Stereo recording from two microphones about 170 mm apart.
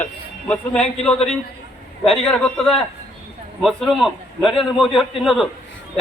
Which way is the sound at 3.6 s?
Centre (ahead or behind).